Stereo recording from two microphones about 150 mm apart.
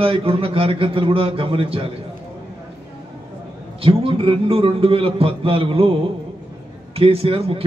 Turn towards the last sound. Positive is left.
turn(degrees=-40)  # may be behind; listen again after turning